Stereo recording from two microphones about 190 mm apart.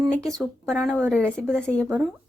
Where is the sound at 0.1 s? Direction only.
5° left (ahead or behind).